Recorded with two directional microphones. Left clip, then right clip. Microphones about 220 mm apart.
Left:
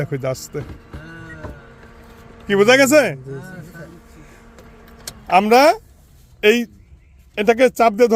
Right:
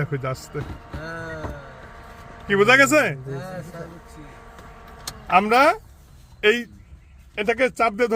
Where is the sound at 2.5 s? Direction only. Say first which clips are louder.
Left 3 dB; 30° left (ahead or behind).